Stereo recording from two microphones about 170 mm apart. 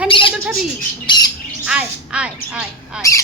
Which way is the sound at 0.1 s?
30° left (ahead or behind).